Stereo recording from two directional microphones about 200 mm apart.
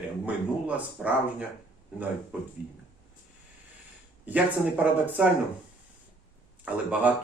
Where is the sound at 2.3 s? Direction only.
5° right (ahead or behind).